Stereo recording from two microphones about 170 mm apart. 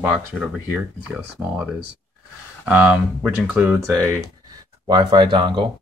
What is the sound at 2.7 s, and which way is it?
Speech, 10° right (ahead or behind).